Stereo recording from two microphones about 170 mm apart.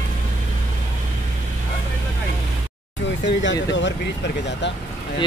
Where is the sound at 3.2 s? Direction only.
90° left.